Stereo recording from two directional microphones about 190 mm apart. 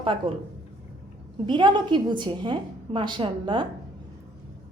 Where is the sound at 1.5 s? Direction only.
25° right (ahead or behind).